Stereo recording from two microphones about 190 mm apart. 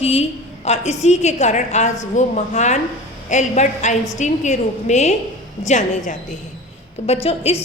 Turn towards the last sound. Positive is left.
turn(degrees=30)  # may be behind; listen again after turning